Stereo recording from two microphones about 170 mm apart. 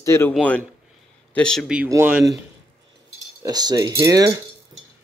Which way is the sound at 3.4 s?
25° right (ahead or behind).